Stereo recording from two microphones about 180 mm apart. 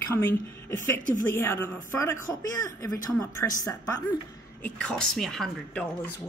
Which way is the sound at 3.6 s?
20° left (ahead or behind).